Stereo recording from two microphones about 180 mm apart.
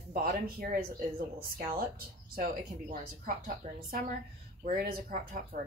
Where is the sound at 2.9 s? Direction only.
55° right (ahead or behind).